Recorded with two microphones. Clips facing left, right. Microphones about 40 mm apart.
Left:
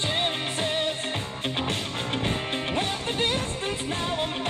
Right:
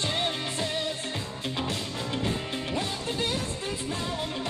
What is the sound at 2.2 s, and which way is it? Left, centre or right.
Music, left.